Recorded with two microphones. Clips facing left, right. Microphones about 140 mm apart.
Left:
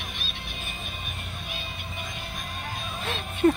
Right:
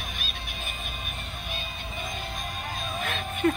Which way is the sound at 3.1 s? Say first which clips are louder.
Left 4 dB; 30° left (ahead or behind).